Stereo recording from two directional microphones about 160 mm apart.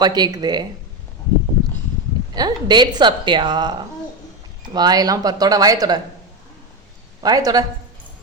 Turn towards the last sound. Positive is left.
turn(degrees=-25)  # may be behind; listen again after turning